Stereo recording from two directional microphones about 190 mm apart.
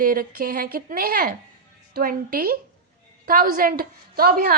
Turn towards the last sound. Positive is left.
turn(degrees=-50)  # may be behind; listen again after turning